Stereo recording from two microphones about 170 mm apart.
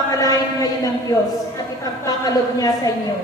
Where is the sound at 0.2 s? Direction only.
20° left (ahead or behind).